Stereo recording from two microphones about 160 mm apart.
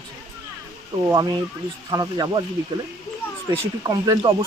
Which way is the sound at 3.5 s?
25° right (ahead or behind).